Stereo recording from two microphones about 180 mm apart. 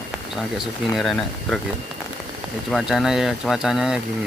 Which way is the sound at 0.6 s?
Centre (ahead or behind).